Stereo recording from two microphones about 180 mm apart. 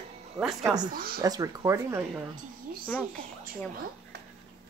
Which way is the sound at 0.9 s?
55° right (ahead or behind).